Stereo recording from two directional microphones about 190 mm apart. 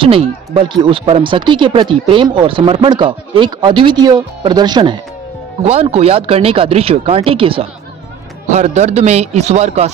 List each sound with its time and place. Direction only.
0.0 s speech: 30° right (ahead or behind)
5.6 s speech: 35° right (ahead or behind)